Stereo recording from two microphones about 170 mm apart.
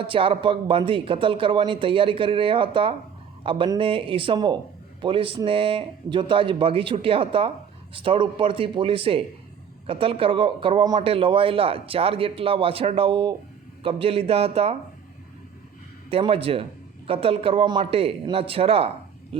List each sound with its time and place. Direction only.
0.0 s speech: 30° right (ahead or behind)
16.0 s speech: 35° right (ahead or behind)